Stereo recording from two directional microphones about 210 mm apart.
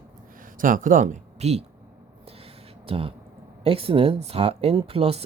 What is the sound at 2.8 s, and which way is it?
Speech, 25° right (ahead or behind).